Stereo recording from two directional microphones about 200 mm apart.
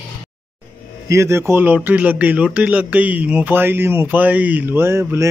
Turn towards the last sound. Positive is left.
turn(degrees=-10)  # may be behind; listen again after turning